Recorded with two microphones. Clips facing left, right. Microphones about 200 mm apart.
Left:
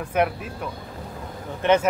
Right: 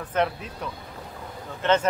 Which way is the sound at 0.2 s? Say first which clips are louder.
Left 2 dB; 10° left (ahead or behind).